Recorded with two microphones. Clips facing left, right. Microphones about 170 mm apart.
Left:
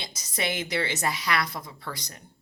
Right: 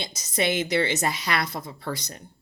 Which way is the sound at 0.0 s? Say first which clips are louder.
Right 5 dB; 20° right (ahead or behind).